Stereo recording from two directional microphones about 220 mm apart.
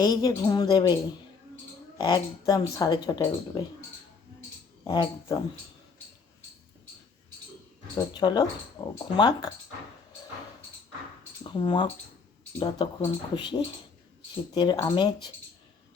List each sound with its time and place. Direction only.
0.0 s a woman's voice: 15° left (ahead or behind)
2.0 s speech: 20° left (ahead or behind)
4.9 s speech: 20° left (ahead or behind)
7.9 s speech: 20° left (ahead or behind)
11.5 s speech: 20° left (ahead or behind)